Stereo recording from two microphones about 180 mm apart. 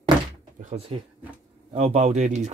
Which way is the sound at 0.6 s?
35° right (ahead or behind).